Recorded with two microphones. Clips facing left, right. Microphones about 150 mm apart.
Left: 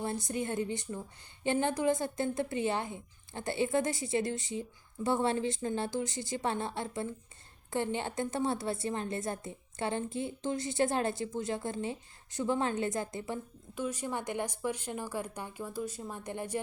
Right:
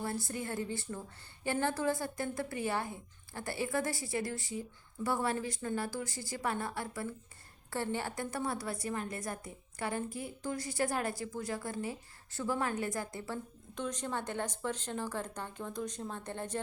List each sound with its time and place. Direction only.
0.0 s a woman's voice: 20° left (ahead or behind)
13.7 s speech: 10° left (ahead or behind)